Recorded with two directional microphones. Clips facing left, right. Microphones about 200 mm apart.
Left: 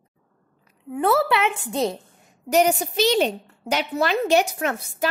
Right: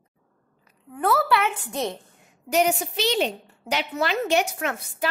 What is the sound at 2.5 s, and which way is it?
A woman's voice, 45° left (ahead or behind).